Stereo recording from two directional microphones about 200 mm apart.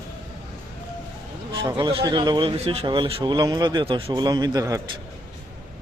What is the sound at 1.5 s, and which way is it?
Speech, 20° right (ahead or behind).